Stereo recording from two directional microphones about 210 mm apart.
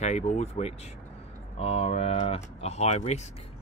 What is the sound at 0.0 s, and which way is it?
Speech, 30° left (ahead or behind).